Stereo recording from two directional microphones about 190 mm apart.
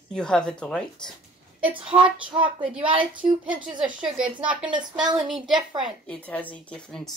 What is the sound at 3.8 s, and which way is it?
A woman's voice, 5° right (ahead or behind).